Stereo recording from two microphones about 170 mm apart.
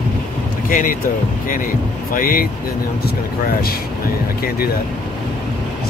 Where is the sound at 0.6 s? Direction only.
50° left (ahead or behind).